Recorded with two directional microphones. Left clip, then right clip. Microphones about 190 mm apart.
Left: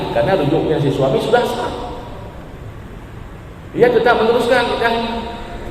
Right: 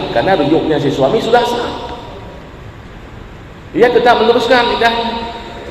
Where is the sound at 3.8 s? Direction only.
25° right (ahead or behind).